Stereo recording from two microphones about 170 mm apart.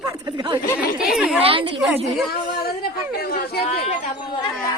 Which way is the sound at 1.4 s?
30° right (ahead or behind).